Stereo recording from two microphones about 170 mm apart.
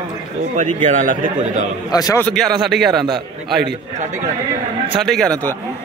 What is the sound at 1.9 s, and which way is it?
Speech, 20° left (ahead or behind).